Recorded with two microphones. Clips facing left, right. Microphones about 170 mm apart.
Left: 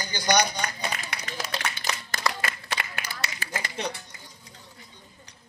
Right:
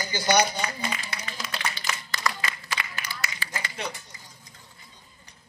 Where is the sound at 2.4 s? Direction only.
50° left (ahead or behind).